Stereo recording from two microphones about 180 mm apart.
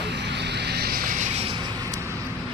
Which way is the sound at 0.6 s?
60° right (ahead or behind).